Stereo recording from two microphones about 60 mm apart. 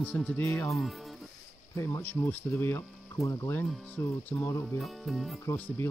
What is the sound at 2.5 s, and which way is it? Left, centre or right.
Speech, left.